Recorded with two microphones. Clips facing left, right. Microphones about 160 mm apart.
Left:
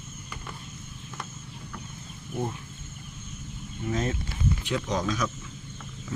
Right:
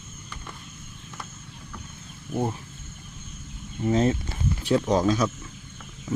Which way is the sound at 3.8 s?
30° right (ahead or behind).